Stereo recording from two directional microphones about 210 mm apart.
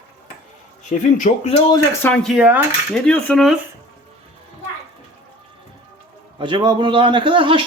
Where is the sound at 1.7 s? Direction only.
10° left (ahead or behind).